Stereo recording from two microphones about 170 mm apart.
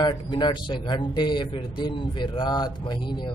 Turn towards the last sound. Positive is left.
turn(degrees=25)  # may be behind; listen again after turning